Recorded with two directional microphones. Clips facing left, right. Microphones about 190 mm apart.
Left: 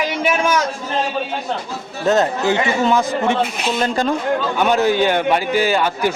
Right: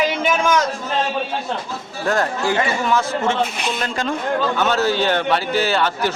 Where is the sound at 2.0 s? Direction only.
20° left (ahead or behind).